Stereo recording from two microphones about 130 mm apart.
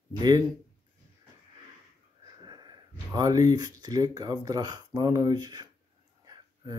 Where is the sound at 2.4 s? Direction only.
35° right (ahead or behind).